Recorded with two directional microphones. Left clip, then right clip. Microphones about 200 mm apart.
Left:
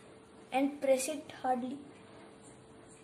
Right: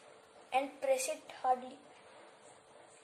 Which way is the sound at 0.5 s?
5° left (ahead or behind).